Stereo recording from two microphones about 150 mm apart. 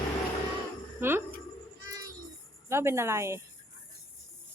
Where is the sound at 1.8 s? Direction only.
25° right (ahead or behind).